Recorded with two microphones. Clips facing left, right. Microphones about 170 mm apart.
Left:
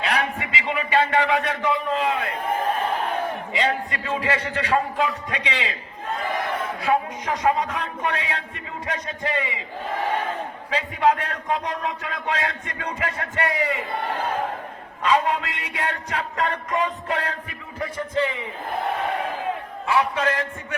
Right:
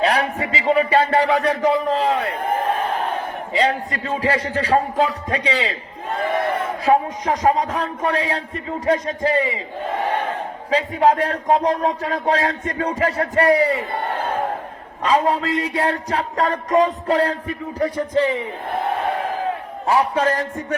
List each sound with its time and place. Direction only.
0.0 s a man's voice: 35° right (ahead or behind)
3.5 s a man's voice: 35° right (ahead or behind)
6.8 s a man's voice: 35° right (ahead or behind)
10.7 s a man's voice: 35° right (ahead or behind)
15.0 s a man's voice: 35° right (ahead or behind)
19.8 s a man's voice: 40° right (ahead or behind)